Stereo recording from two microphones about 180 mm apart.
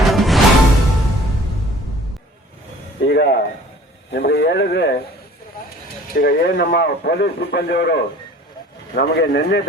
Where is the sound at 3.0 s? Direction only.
65° left (ahead or behind).